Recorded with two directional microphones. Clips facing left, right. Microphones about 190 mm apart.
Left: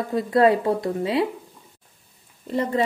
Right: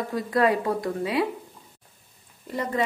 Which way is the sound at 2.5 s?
30° left (ahead or behind).